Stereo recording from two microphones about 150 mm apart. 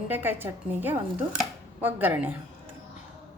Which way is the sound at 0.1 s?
15° right (ahead or behind).